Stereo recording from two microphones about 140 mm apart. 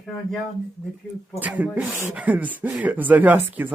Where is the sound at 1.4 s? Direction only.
10° right (ahead or behind).